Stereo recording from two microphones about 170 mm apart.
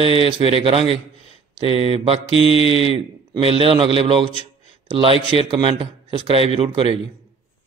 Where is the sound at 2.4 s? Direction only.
35° left (ahead or behind).